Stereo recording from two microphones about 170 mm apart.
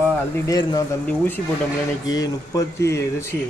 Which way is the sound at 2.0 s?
20° left (ahead or behind).